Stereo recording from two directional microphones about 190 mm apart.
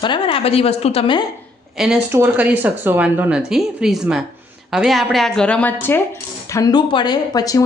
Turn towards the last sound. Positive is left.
turn(degrees=20)  # may be behind; listen again after turning